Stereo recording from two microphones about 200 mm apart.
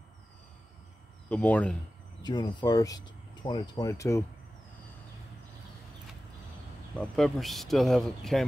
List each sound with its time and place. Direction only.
1.3 s speech: 5° left (ahead or behind)
2.2 s speech: 20° left (ahead or behind)
7.0 s speech: centre (ahead or behind)